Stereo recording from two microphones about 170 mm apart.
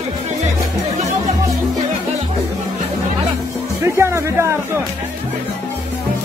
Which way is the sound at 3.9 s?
15° right (ahead or behind).